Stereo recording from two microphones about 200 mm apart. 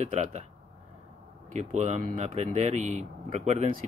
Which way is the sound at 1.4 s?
35° right (ahead or behind).